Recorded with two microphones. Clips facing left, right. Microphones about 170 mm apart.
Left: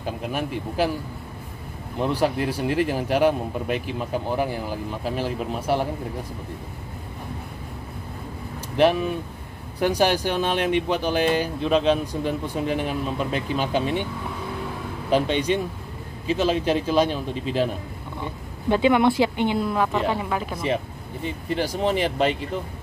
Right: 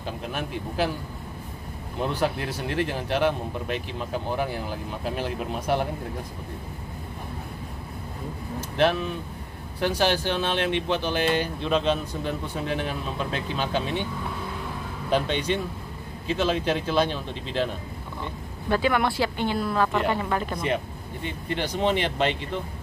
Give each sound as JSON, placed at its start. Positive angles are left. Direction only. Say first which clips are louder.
{"t": 0.0, "sound": "speech", "louder": "left 4 dB", "side_deg": 5}
{"t": 2.0, "sound": "speech", "louder": "left 4 dB", "side_deg": 5}
{"t": 9.8, "sound": "speech", "louder": "left 3 dB", "side_deg": 15}
{"t": 15.0, "sound": "speech", "louder": "left 3 dB", "side_deg": 5}
{"t": 18.2, "sound": "speech", "louder": "left 7 dB", "side_deg": 20}
{"t": 19.9, "sound": "speech", "louder": "left 1 dB", "side_deg": 0}